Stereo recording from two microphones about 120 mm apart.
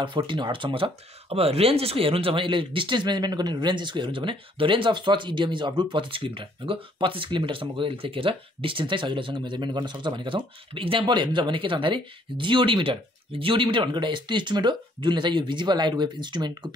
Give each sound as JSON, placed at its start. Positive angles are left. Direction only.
{"t": 0.0, "sound": "speech", "side_deg": -40}